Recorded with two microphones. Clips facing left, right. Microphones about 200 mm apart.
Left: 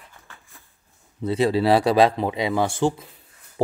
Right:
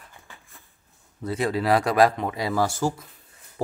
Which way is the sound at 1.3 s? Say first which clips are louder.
Left 4 dB; 25° left (ahead or behind).